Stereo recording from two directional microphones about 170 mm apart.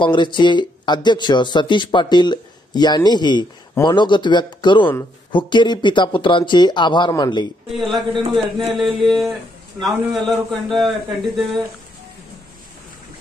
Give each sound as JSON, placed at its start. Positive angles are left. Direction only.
{"t": 0.0, "sound": "speech", "side_deg": 30}
{"t": 8.1, "sound": "a man's voice", "side_deg": -30}
{"t": 8.7, "sound": "a man's voice", "side_deg": 0}